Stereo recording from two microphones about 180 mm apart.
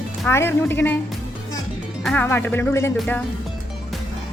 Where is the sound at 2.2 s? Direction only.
10° left (ahead or behind).